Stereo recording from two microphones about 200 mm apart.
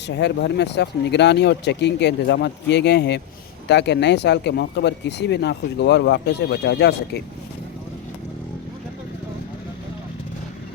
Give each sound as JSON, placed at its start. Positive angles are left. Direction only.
{"t": 0.2, "sound": "speech", "side_deg": 60}